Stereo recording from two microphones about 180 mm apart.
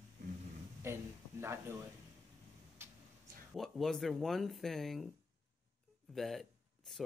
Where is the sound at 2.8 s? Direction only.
15° right (ahead or behind).